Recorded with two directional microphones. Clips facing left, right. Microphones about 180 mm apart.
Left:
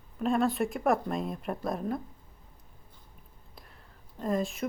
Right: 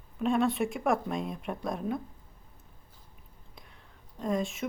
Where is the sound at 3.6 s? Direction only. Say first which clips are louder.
Left 1 dB; centre (ahead or behind).